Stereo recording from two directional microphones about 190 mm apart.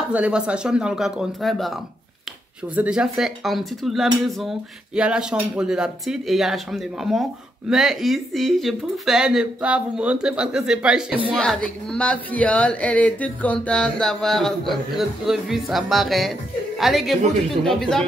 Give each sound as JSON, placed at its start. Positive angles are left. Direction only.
{"t": 0.1, "sound": "speech", "side_deg": -5}
{"t": 2.7, "sound": "speech", "side_deg": -5}